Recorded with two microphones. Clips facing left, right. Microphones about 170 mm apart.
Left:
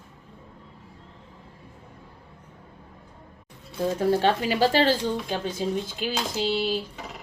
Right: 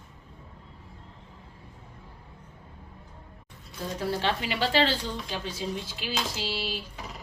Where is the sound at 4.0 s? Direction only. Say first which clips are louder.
Left 6 dB; 45° left (ahead or behind).